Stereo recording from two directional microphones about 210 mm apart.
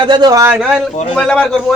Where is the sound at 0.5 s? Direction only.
5° right (ahead or behind).